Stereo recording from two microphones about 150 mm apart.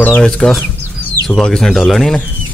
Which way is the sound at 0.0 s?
5° left (ahead or behind).